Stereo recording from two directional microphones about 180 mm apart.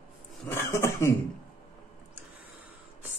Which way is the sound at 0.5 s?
15° left (ahead or behind).